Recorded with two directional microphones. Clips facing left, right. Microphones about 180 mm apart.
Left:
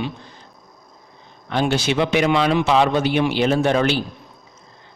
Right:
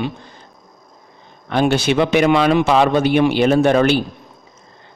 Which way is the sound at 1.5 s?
55° right (ahead or behind).